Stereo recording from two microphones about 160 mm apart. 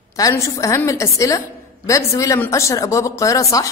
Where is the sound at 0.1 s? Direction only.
20° left (ahead or behind).